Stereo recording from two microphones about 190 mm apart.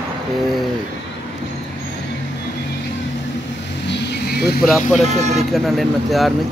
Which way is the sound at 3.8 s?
65° left (ahead or behind).